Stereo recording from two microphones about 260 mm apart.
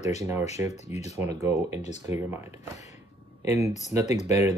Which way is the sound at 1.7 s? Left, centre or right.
Left.